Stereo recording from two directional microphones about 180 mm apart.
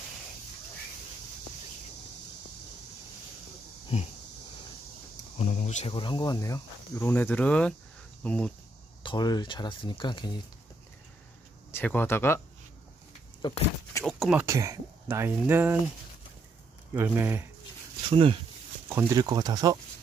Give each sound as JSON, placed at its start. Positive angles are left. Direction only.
{"t": 3.9, "sound": "a sound", "side_deg": 35}
{"t": 5.4, "sound": "speech", "side_deg": 40}
{"t": 5.9, "sound": "speech", "side_deg": 25}
{"t": 7.0, "sound": "speech", "side_deg": 10}
{"t": 9.0, "sound": "speech", "side_deg": 25}
{"t": 11.7, "sound": "speech", "side_deg": 10}
{"t": 13.4, "sound": "speech", "side_deg": 25}
{"t": 14.3, "sound": "speech", "side_deg": -15}
{"t": 16.9, "sound": "speech", "side_deg": -10}
{"t": 18.1, "sound": "speech", "side_deg": -30}
{"t": 18.9, "sound": "speech", "side_deg": -20}